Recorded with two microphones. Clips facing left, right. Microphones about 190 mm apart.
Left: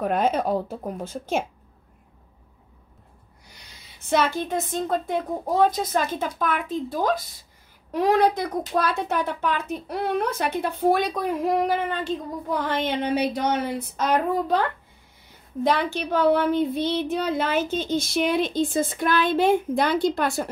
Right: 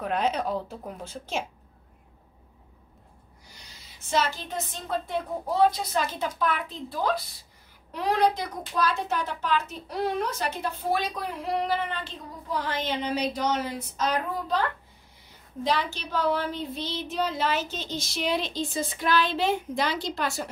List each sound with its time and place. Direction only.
0.0 s a woman's voice: 50° left (ahead or behind)
4.0 s a woman's voice: 60° left (ahead or behind)